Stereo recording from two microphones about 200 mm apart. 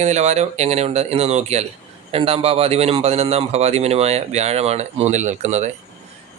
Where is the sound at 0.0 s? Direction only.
35° right (ahead or behind).